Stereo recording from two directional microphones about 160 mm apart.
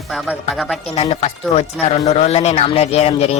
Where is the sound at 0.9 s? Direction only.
40° left (ahead or behind).